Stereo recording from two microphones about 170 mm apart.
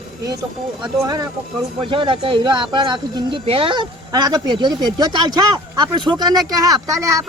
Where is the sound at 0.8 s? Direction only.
25° right (ahead or behind).